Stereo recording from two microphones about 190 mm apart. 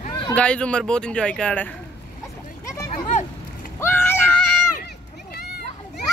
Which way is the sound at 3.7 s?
10° left (ahead or behind).